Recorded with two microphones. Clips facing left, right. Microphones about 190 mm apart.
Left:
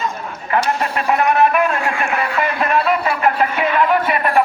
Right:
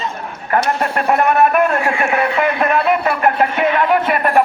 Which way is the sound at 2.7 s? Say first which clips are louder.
Right 1 dB; 55° right (ahead or behind).